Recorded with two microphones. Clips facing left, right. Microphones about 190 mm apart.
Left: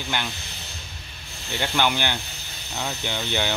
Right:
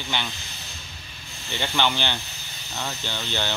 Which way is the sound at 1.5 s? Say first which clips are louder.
Left 1 dB; 10° left (ahead or behind).